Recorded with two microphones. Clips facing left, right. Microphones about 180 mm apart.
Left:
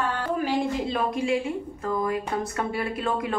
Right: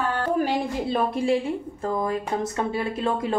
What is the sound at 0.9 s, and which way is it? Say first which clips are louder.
Speech: right 5 dB; 35° right (ahead or behind).